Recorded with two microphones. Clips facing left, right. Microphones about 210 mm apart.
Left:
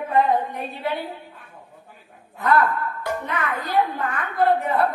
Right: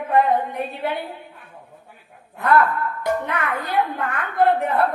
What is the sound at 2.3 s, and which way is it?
A woman's voice, 60° right (ahead or behind).